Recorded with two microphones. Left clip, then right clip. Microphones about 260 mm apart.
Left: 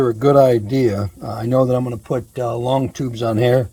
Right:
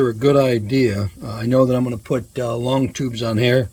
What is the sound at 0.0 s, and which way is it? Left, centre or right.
Speech, centre.